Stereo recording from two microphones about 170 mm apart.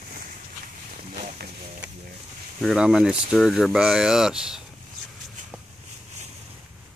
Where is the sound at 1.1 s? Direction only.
45° right (ahead or behind).